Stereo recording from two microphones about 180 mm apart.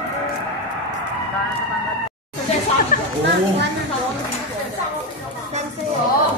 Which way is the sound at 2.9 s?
50° left (ahead or behind).